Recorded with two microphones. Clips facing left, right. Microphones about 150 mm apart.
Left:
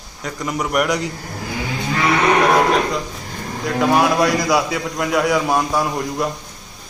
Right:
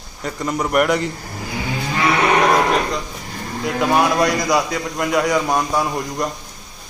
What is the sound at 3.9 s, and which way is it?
A man's voice, centre (ahead or behind).